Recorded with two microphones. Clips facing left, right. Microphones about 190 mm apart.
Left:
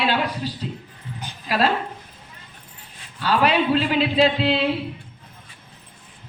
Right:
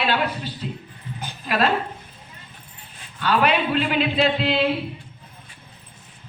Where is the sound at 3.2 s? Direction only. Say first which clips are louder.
Left 1 dB; 35° left (ahead or behind).